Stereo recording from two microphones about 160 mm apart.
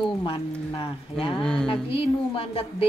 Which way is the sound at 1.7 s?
35° left (ahead or behind).